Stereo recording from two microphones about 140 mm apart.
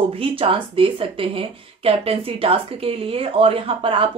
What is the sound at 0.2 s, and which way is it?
A woman's voice, 40° right (ahead or behind).